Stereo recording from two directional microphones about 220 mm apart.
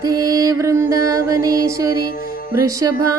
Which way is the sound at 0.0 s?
15° right (ahead or behind).